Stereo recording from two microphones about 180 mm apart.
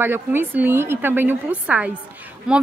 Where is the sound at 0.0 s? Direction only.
10° right (ahead or behind).